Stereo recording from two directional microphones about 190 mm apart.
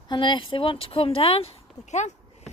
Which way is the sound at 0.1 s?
25° left (ahead or behind).